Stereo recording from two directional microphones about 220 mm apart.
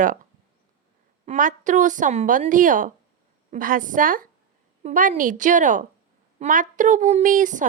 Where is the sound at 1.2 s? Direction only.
35° right (ahead or behind).